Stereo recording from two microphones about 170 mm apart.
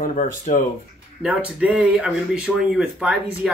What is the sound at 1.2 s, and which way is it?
Speech, 5° right (ahead or behind).